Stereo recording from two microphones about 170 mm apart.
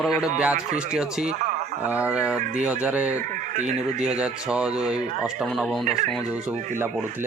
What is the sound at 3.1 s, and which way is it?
Speech, 45° right (ahead or behind).